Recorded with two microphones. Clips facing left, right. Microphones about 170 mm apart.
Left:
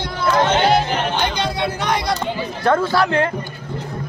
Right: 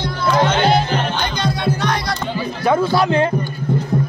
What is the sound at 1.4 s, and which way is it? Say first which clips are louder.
Music: right 2 dB; 20° left (ahead or behind).